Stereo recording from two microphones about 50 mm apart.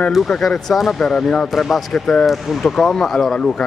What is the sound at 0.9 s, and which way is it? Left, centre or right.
Speech, centre.